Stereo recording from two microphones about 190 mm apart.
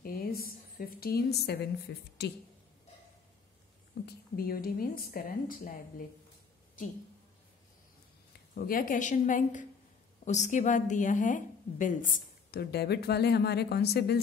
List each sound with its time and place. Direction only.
0.0 s a woman's voice: 50° left (ahead or behind)
4.0 s a woman's voice: 50° left (ahead or behind)
8.5 s a woman's voice: 50° left (ahead or behind)